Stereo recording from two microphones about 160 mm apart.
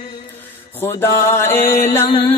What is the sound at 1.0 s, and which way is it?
Mantra, 15° left (ahead or behind).